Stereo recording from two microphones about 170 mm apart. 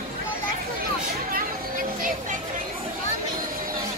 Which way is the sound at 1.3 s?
55° right (ahead or behind).